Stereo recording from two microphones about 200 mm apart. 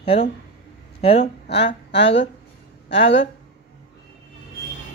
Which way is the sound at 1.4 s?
60° left (ahead or behind).